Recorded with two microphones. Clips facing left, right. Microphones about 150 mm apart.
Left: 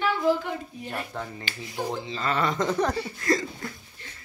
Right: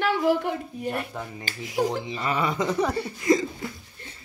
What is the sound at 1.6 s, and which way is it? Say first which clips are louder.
Speech: right 8 dB; 90° right.